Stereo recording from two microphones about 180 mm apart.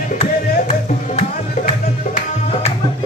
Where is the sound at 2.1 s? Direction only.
35° left (ahead or behind).